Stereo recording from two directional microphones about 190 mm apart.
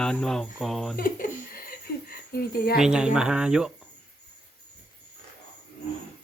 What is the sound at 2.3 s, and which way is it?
Speech, 55° left (ahead or behind).